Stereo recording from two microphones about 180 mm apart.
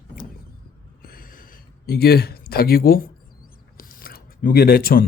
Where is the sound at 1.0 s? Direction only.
50° left (ahead or behind).